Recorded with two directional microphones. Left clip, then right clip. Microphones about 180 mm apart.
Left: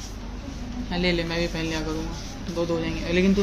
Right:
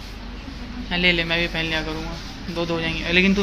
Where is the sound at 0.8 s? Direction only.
Centre (ahead or behind).